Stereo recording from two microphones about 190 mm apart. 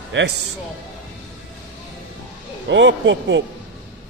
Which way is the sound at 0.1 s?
75° right (ahead or behind).